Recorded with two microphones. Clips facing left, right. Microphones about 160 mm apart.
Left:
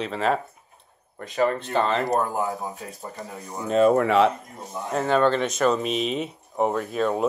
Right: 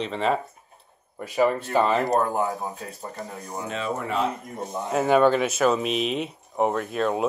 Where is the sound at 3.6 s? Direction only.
45° left (ahead or behind).